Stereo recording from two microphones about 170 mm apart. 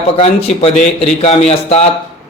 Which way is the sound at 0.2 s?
35° left (ahead or behind).